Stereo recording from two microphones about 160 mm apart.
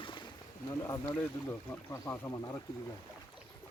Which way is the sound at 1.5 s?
15° left (ahead or behind).